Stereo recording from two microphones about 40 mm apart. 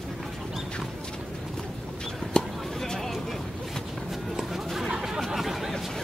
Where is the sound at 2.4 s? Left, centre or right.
Centre.